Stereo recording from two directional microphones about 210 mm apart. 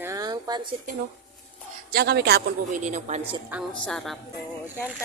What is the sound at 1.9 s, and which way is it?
Speech, 50° right (ahead or behind).